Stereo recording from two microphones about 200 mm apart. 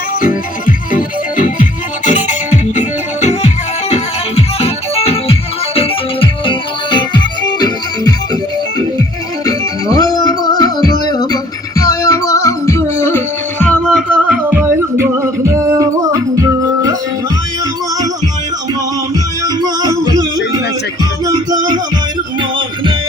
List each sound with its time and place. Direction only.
0.9 s music: 40° left (ahead or behind); by 8.1 s 20° left (ahead or behind)
9.5 s music: 20° left (ahead or behind); by 14.3 s centre (ahead or behind)
14.8 s music: 15° right (ahead or behind)
19.6 s music: 20° right (ahead or behind)